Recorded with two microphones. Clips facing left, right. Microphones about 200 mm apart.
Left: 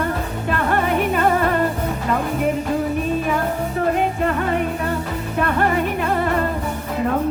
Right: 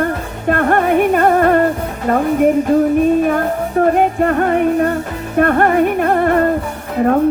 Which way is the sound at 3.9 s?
50° right (ahead or behind).